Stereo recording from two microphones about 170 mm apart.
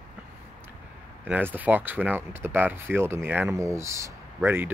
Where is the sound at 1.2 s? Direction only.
10° right (ahead or behind).